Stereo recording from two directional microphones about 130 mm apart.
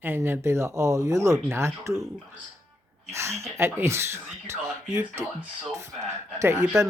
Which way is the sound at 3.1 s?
20° right (ahead or behind).